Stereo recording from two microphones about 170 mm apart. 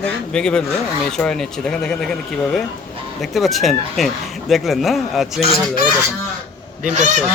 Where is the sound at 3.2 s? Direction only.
Centre (ahead or behind).